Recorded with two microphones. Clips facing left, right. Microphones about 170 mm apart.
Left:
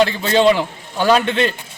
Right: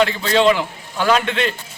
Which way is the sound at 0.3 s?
25° left (ahead or behind).